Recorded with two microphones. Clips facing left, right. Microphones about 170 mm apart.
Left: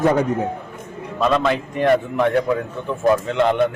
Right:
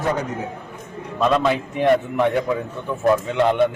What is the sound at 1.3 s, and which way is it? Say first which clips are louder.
A man's voice: even; 5° right (ahead or behind).